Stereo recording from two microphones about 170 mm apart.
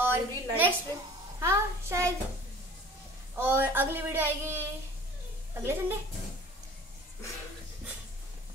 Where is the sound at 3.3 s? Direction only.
15° right (ahead or behind).